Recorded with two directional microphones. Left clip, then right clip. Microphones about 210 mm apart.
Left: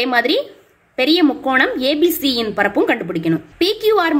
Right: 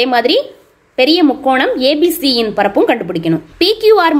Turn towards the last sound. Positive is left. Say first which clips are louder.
# right 6 dB
turn(degrees=-15)  # may be behind; listen again after turning